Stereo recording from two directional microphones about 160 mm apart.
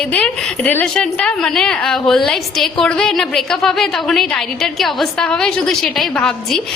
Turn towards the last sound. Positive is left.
turn(degrees=5)  # may be behind; listen again after turning